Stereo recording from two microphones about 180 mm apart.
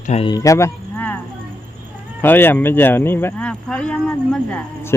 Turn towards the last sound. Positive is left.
turn(degrees=5)  # may be behind; listen again after turning